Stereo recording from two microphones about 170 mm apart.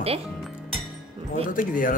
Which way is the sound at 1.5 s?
55° left (ahead or behind).